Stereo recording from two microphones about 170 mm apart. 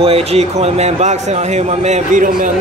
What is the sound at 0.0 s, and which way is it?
A man's voice, 35° right (ahead or behind).